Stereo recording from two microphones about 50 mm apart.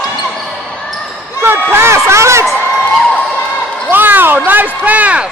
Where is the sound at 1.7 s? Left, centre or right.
Right.